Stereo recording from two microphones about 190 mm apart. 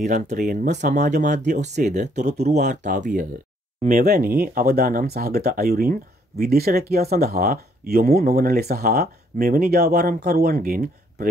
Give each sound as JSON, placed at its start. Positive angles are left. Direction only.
{"t": 0.3, "sound": "speech", "side_deg": -45}